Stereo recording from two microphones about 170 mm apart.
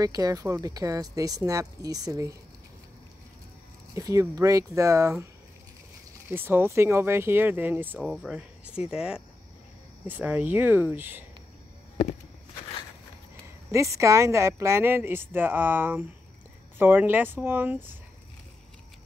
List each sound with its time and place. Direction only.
0.0 s speech: 20° right (ahead or behind)
3.9 s speech: 20° right (ahead or behind)
6.2 s speech: 10° right (ahead or behind)
8.0 s speech: centre (ahead or behind)
13.7 s speech: 20° right (ahead or behind)